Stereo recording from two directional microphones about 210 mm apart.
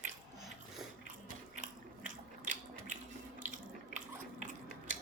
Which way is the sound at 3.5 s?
35° right (ahead or behind).